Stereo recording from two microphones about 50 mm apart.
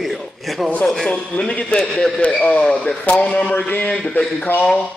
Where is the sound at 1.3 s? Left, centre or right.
Left.